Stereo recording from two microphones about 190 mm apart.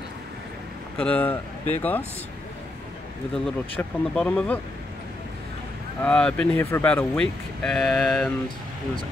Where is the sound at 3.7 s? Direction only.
5° left (ahead or behind).